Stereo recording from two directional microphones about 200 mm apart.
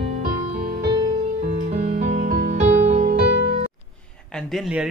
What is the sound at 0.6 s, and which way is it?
Music, 50° right (ahead or behind).